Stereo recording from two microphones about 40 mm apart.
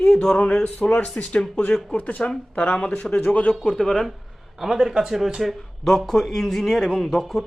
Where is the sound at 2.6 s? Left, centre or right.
Left.